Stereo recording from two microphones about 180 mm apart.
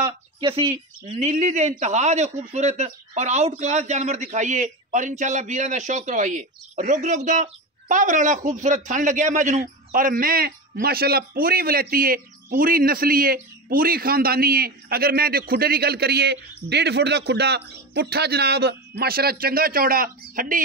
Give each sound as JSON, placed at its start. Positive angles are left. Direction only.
{"t": 0.0, "sound": "speech", "side_deg": -30}